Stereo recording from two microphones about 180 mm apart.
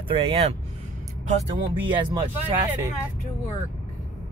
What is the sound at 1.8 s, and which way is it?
Speech, 25° right (ahead or behind).